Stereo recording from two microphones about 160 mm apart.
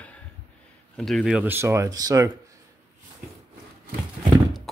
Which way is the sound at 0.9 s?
Centre (ahead or behind).